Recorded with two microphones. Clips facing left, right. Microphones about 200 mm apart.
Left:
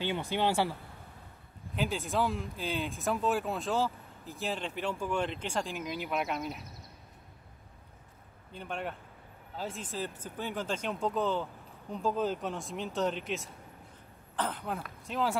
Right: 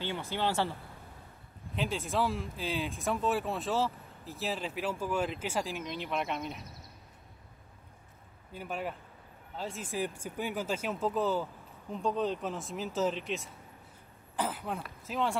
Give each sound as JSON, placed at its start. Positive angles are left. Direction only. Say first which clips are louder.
{"t": 0.0, "sound": "speech", "louder": "left 3 dB", "side_deg": 15}
{"t": 1.8, "sound": "speech", "louder": "left 1 dB", "side_deg": 0}
{"t": 8.5, "sound": "speech", "louder": "right 1 dB", "side_deg": -5}
{"t": 9.8, "sound": "speech", "louder": "right 3 dB", "side_deg": -10}